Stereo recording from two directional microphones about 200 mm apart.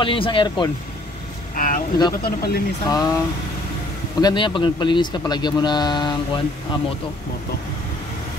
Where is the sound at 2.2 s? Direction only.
50° left (ahead or behind).